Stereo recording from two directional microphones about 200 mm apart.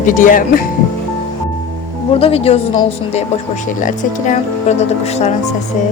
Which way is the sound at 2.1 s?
30° left (ahead or behind).